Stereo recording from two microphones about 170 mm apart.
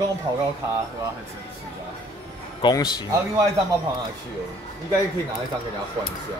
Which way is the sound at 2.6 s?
25° left (ahead or behind).